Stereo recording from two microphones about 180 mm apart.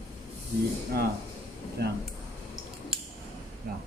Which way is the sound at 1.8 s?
65° right (ahead or behind).